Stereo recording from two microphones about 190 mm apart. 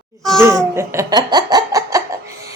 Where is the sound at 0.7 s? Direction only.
15° right (ahead or behind).